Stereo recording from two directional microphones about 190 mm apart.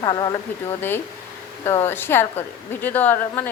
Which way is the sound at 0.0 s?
20° left (ahead or behind).